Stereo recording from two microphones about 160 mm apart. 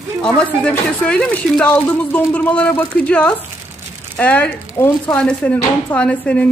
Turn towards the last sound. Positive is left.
turn(degrees=10)  # may be behind; listen again after turning